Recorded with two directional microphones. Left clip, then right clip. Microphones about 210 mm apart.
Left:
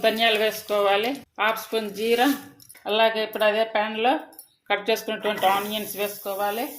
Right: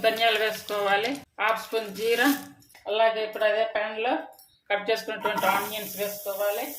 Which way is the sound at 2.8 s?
40° left (ahead or behind).